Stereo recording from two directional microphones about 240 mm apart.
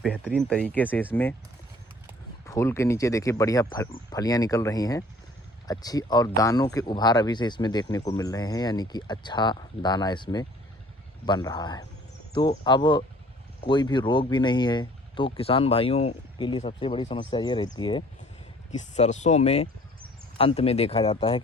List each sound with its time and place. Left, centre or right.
0.0 s speech: centre
2.5 s speech: centre